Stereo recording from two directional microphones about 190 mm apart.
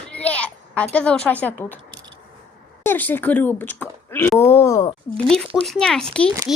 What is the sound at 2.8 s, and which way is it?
Speech, 10° left (ahead or behind).